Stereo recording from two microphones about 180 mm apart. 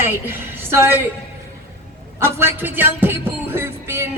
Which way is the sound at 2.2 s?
15° right (ahead or behind).